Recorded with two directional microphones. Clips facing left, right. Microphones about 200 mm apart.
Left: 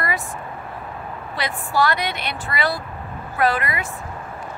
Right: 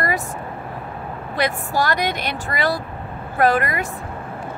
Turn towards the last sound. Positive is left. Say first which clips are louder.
# right 3 dB
turn(degrees=-45)  # may be behind; listen again after turning